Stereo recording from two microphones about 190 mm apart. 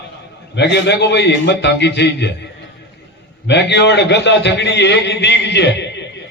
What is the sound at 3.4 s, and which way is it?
A man's voice, 65° left (ahead or behind).